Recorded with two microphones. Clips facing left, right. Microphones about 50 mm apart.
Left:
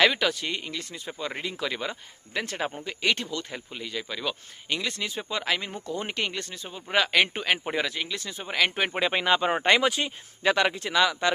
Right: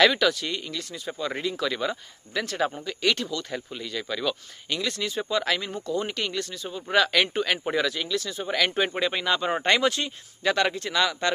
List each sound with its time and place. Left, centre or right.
0.1 s speech: left
3.5 s speech: centre
6.7 s speech: centre